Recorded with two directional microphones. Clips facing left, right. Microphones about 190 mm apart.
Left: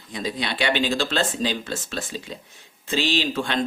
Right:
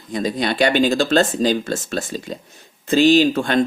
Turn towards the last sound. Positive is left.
turn(degrees=-45)  # may be behind; listen again after turning